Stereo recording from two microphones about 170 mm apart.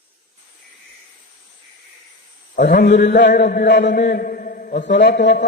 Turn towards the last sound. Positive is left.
turn(degrees=90)